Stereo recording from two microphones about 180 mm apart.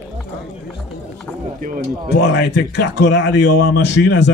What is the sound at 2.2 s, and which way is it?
Speech, 70° left (ahead or behind).